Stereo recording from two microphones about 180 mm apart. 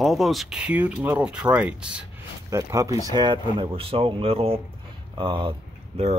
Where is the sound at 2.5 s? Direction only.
15° right (ahead or behind).